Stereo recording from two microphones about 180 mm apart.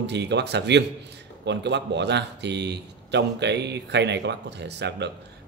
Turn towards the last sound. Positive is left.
turn(degrees=-70)  # may be behind; listen again after turning